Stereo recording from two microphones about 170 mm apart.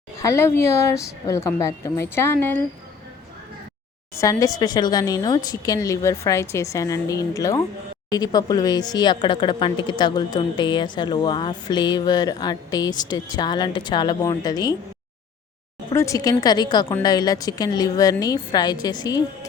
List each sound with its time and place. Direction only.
0.2 s a woman's voice: 15° left (ahead or behind)
4.1 s a woman's voice: 20° left (ahead or behind)
16.0 s a woman's voice: 20° left (ahead or behind)